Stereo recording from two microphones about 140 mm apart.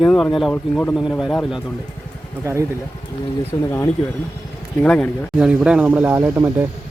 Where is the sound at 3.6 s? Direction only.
20° left (ahead or behind).